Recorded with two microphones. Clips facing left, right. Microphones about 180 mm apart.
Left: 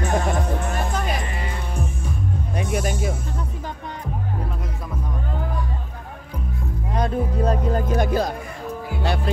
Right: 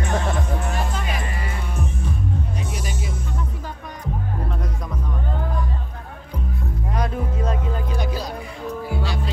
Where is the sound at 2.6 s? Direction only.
55° left (ahead or behind).